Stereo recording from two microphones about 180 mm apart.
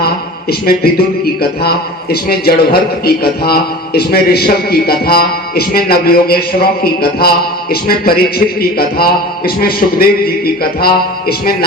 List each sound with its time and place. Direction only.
0.6 s a man's voice: 55° left (ahead or behind)